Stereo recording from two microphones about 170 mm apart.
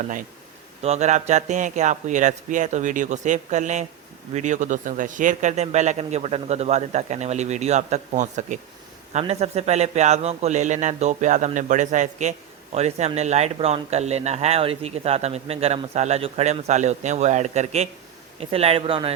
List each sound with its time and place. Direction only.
0.8 s a man's voice: 40° right (ahead or behind)